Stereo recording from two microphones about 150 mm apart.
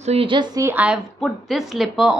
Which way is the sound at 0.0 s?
40° right (ahead or behind).